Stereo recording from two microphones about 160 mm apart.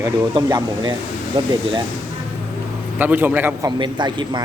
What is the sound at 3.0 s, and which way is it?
Speech, 10° right (ahead or behind).